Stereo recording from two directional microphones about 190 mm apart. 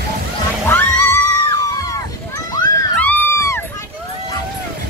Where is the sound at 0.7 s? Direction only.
10° left (ahead or behind).